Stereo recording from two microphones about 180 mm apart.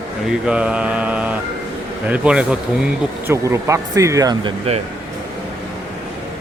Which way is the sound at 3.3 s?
15° right (ahead or behind).